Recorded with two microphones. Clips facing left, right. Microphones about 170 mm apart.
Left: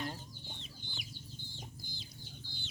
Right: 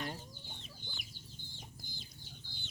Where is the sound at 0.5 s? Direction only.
50° right (ahead or behind).